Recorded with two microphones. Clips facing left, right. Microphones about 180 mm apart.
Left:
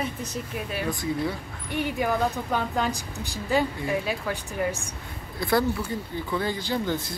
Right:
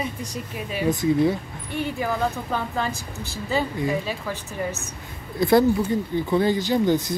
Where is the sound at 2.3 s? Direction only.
10° left (ahead or behind).